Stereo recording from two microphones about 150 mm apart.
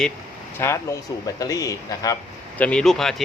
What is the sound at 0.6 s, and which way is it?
Speech, 15° left (ahead or behind).